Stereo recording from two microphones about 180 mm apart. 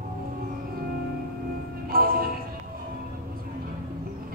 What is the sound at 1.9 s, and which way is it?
Music, 55° right (ahead or behind).